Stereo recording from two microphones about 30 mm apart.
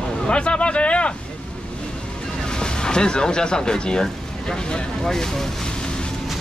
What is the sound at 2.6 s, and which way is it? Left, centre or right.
Speech, left.